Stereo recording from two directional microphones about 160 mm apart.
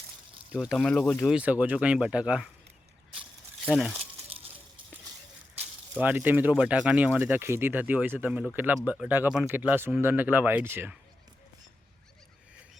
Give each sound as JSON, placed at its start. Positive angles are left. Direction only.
{"t": 0.5, "sound": "speech", "side_deg": -5}
{"t": 1.3, "sound": "speech", "side_deg": -10}
{"t": 3.7, "sound": "speech", "side_deg": 0}
{"t": 6.0, "sound": "speech", "side_deg": -10}